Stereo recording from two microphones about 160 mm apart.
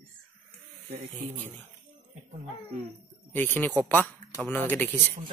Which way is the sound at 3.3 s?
10° left (ahead or behind).